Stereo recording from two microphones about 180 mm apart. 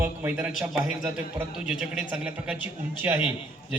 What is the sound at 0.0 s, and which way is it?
A man's voice, 10° right (ahead or behind).